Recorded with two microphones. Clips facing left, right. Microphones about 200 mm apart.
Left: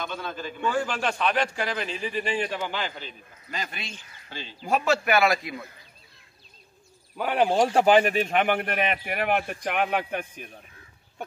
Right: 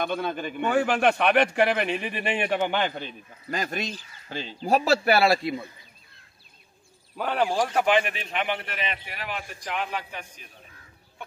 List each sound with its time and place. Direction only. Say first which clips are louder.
0.0 s a man's voice: right 5 dB; 55° right (ahead or behind)
4.6 s a man's voice: right 2 dB; 35° right (ahead or behind)
7.2 s speech: left 2 dB; 10° left (ahead or behind)
7.5 s speech: left 6 dB; 25° left (ahead or behind); by 10.5 s 55° left (ahead or behind)